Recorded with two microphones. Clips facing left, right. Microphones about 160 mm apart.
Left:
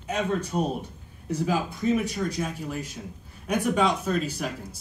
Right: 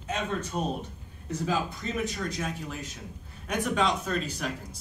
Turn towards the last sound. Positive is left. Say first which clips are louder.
# left 4 dB
turn(degrees=5)  # may be behind; listen again after turning